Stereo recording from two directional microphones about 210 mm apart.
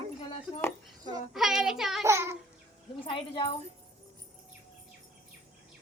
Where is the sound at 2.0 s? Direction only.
15° right (ahead or behind).